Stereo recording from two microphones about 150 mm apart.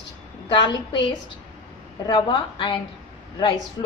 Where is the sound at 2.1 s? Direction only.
35° left (ahead or behind).